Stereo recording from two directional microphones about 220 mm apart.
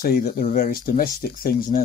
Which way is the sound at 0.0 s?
40° left (ahead or behind).